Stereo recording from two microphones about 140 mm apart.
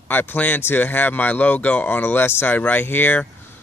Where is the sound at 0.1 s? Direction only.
15° left (ahead or behind).